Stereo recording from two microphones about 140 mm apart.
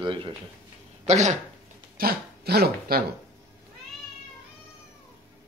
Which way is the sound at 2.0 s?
90° right.